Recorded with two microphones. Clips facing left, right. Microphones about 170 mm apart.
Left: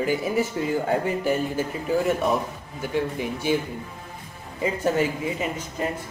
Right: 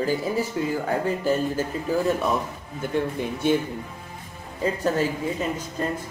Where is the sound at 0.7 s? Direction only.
15° left (ahead or behind).